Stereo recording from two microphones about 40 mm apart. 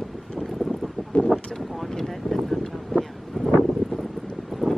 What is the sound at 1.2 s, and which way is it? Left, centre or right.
Boat, centre.